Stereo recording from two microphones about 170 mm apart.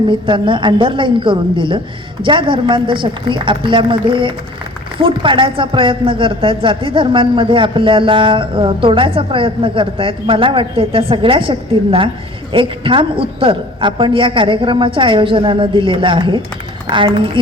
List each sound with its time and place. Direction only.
0.1 s a woman's voice: 30° right (ahead or behind)